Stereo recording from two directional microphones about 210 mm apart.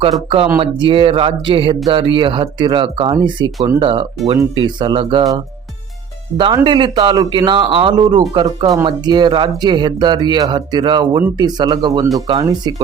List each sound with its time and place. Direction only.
0.0 s speech: 25° right (ahead or behind)